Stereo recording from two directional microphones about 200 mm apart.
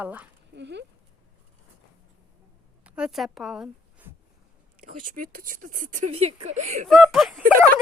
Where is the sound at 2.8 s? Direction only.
5° right (ahead or behind).